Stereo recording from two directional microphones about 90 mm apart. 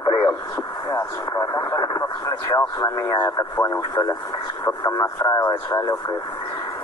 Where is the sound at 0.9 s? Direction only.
30° left (ahead or behind).